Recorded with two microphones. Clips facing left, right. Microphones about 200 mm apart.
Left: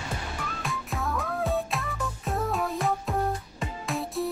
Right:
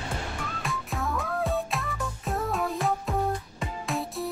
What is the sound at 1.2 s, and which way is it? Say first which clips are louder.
Music: left 1 dB; centre (ahead or behind).